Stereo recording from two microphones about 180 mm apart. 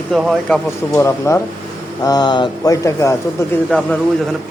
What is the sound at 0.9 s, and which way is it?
A man's voice, 15° left (ahead or behind).